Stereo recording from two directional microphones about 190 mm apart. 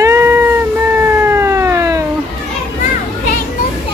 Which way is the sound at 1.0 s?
10° right (ahead or behind).